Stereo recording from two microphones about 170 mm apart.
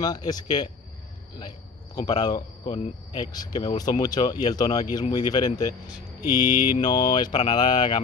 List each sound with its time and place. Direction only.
0.0 s speech: 25° left (ahead or behind)
2.0 s speech: 25° left (ahead or behind)